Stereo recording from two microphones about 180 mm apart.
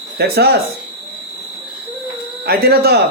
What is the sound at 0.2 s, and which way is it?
Speech, 65° right (ahead or behind).